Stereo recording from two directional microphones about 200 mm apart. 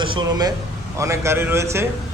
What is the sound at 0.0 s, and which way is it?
A man's voice, 20° right (ahead or behind).